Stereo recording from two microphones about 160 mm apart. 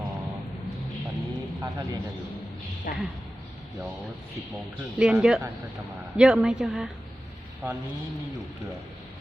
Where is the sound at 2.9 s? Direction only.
55° left (ahead or behind).